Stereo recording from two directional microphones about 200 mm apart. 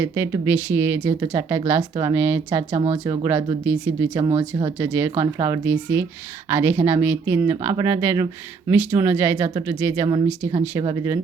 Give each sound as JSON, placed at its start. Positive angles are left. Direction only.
{"t": 0.0, "sound": "speech", "side_deg": -10}
{"t": 2.7, "sound": "speech", "side_deg": -30}
{"t": 3.2, "sound": "speech", "side_deg": -10}
{"t": 4.1, "sound": "speech", "side_deg": -25}
{"t": 4.8, "sound": "speech", "side_deg": -10}